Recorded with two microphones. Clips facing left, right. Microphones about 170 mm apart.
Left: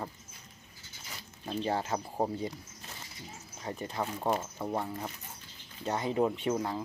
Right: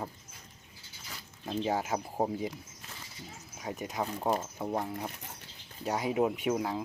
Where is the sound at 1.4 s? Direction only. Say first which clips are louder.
Right 1 dB; 5° right (ahead or behind).